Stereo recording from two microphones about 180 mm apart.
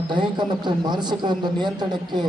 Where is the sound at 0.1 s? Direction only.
25° right (ahead or behind).